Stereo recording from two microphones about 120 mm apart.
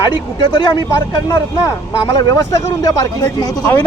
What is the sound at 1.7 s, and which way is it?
Speech, 30° left (ahead or behind).